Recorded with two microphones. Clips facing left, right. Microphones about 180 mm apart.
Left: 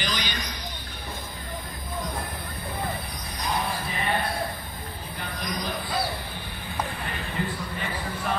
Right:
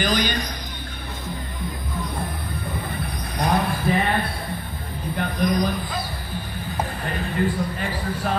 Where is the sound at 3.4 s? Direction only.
55° right (ahead or behind).